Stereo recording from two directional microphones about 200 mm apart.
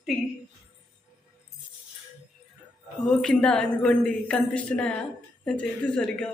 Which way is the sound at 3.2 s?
5° left (ahead or behind).